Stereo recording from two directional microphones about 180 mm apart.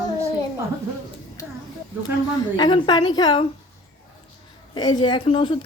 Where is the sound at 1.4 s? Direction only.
15° left (ahead or behind).